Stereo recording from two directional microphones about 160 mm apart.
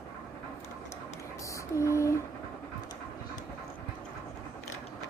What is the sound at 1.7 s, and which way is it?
Speech, 20° left (ahead or behind).